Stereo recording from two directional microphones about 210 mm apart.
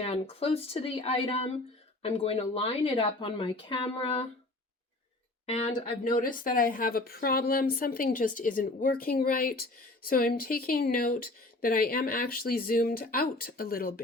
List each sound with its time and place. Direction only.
0.0 s speech: 30° left (ahead or behind)
5.5 s speech: 30° left (ahead or behind)